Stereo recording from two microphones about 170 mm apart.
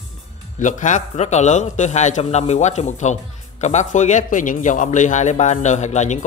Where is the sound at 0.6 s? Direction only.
45° left (ahead or behind).